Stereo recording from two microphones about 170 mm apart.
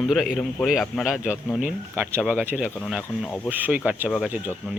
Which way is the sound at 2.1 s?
15° right (ahead or behind).